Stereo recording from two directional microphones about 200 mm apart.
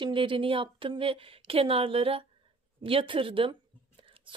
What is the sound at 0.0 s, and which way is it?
Speech, 25° right (ahead or behind).